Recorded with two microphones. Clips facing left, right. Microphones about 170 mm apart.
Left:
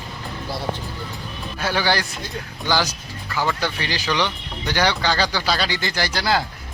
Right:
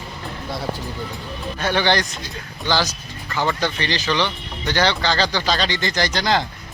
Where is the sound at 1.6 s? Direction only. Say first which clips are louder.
Right 2 dB; 5° left (ahead or behind).